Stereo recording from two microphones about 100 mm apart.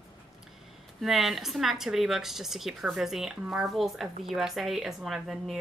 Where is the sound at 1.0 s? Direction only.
Centre (ahead or behind).